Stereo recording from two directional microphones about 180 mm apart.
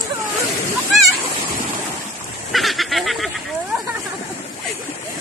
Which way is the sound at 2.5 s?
Centre (ahead or behind).